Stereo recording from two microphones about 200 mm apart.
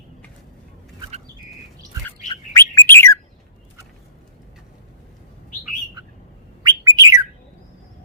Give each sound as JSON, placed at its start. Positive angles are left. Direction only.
{"t": 2.6, "sound": "bird", "side_deg": 10}
{"t": 6.6, "sound": "bird", "side_deg": -20}